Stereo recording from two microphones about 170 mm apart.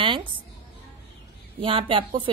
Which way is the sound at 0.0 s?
30° right (ahead or behind).